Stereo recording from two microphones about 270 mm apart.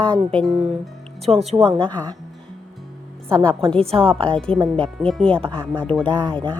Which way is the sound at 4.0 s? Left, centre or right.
Centre.